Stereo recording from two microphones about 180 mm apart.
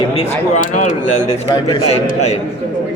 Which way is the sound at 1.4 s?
25° left (ahead or behind).